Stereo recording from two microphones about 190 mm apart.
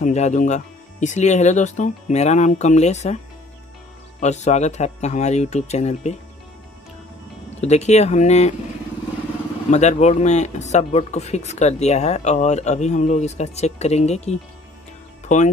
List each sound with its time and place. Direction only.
0.0 s speech: 40° left (ahead or behind)
4.2 s speech: 35° left (ahead or behind)
7.6 s speech: 35° left (ahead or behind)
9.7 s speech: 35° left (ahead or behind)